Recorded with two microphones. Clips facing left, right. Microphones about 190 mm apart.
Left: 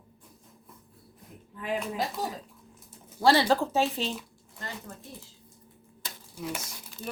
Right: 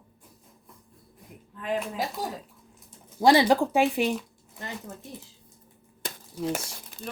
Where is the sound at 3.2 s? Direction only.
15° right (ahead or behind).